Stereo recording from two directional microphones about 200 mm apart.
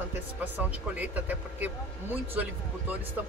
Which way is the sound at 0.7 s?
10° right (ahead or behind).